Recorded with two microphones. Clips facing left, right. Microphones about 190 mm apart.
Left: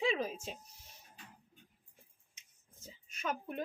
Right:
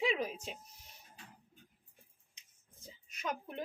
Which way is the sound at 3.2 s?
20° right (ahead or behind).